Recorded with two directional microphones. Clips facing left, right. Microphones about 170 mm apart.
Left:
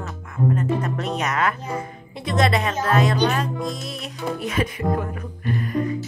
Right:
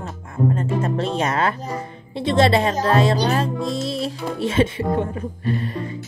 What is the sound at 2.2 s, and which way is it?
Speech, 30° right (ahead or behind).